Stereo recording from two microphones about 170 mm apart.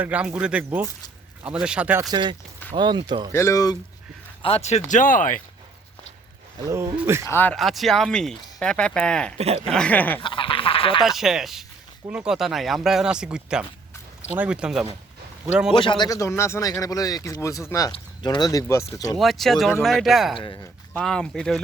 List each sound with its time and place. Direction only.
0.0 s speech: 5° right (ahead or behind)
2.0 s speech: 25° right (ahead or behind)
3.3 s speech: 15° left (ahead or behind)
4.4 s speech: 40° left (ahead or behind)
4.9 s speech: 50° left (ahead or behind)
6.7 s speech: 15° right (ahead or behind)
7.3 s speech: 10° left (ahead or behind)
7.5 s speech: centre (ahead or behind)
10.2 s goose: 30° left (ahead or behind)
11.0 s speech: centre (ahead or behind)
15.7 s speech: 30° left (ahead or behind)
19.2 s speech: centre (ahead or behind)